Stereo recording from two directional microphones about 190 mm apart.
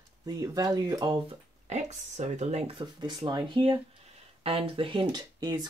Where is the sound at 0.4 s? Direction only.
20° right (ahead or behind).